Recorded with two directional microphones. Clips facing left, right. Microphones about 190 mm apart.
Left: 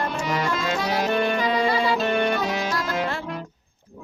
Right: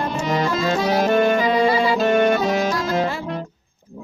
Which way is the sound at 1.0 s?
45° right (ahead or behind).